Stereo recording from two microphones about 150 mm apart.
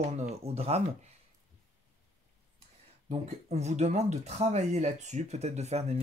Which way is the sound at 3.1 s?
45° right (ahead or behind).